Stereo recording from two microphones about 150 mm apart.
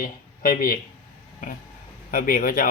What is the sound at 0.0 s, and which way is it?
Speech, 75° left (ahead or behind).